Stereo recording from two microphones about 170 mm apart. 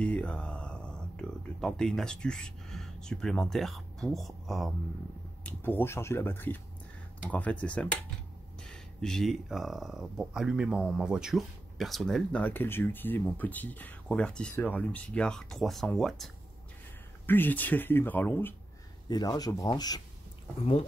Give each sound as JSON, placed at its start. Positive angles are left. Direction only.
{"t": 0.0, "sound": "speech", "side_deg": 5}
{"t": 5.4, "sound": "speech", "side_deg": 10}
{"t": 17.3, "sound": "speech", "side_deg": 10}
{"t": 19.0, "sound": "speech", "side_deg": 25}